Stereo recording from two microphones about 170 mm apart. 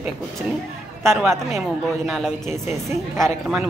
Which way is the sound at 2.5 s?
15° right (ahead or behind).